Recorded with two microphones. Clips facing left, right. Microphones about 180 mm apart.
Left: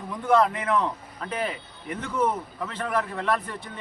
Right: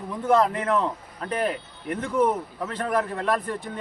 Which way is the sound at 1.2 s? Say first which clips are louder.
Right 4 dB; 50° right (ahead or behind).